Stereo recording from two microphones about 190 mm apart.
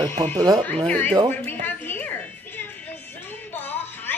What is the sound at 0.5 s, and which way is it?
Speech, 5° left (ahead or behind).